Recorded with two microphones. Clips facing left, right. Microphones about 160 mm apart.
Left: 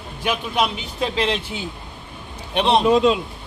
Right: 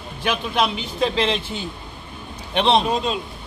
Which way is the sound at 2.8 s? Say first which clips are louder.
Left 7 dB; 80° left.